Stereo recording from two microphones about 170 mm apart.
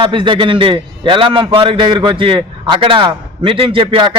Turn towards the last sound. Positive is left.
turn(degrees=-30)  # may be behind; listen again after turning